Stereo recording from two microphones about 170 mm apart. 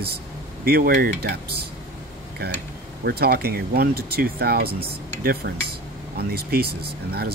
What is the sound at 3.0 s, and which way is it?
Speech, 65° right (ahead or behind).